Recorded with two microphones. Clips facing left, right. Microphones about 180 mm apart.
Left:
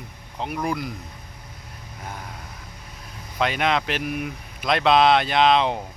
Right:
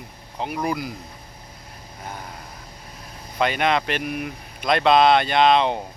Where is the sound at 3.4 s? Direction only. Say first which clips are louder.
Right 2 dB; centre (ahead or behind).